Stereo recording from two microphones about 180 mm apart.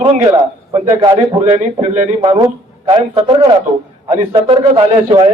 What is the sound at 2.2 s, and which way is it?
A man's voice, 25° right (ahead or behind).